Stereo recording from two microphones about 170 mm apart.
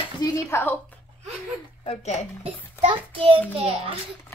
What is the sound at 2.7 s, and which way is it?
A child's voice, 30° right (ahead or behind).